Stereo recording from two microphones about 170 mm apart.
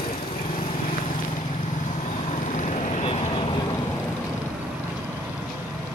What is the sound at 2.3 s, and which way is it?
Vehicle, 45° left (ahead or behind).